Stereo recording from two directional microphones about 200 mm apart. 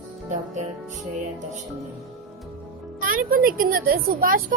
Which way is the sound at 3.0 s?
45° right (ahead or behind).